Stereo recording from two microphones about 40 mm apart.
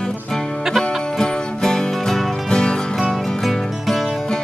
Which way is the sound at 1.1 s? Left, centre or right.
Centre.